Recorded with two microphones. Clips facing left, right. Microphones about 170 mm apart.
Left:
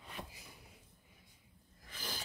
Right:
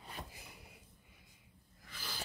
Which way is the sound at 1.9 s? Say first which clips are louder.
Left 3 dB; 45° left (ahead or behind).